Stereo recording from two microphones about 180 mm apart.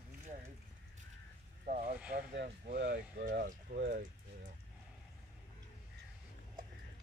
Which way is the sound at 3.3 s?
50° right (ahead or behind).